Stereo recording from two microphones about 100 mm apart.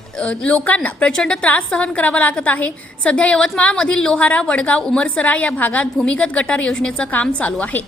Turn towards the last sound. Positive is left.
turn(degrees=15)  # may be behind; listen again after turning